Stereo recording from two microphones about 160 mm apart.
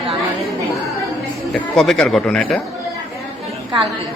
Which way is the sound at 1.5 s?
Centre (ahead or behind).